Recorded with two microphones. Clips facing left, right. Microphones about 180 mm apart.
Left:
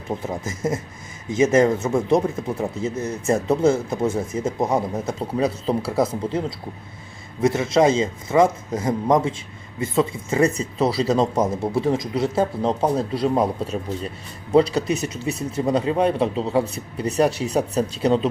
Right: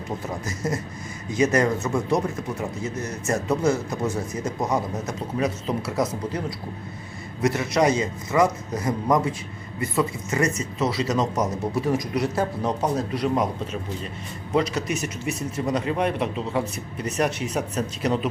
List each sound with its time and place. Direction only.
0.2 s speech: 25° left (ahead or behind)
7.4 s speech: 25° left (ahead or behind)